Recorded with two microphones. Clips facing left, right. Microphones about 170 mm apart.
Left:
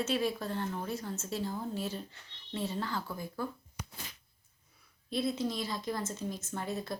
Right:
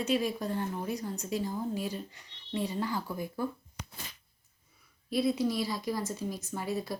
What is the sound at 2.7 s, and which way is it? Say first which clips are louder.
Speech: right 3 dB; 15° right (ahead or behind).